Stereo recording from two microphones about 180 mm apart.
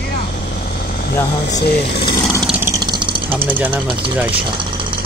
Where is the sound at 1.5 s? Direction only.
65° left (ahead or behind).